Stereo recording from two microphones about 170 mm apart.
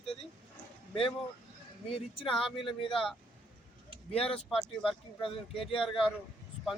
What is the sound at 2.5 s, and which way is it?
Speech, 30° left (ahead or behind).